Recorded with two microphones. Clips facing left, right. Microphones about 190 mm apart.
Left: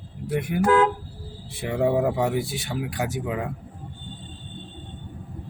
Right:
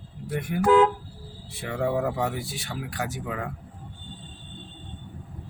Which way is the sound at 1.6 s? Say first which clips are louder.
Left 4 dB; 20° left (ahead or behind).